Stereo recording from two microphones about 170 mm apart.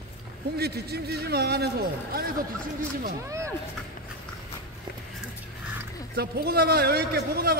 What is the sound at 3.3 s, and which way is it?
Speech, 15° right (ahead or behind).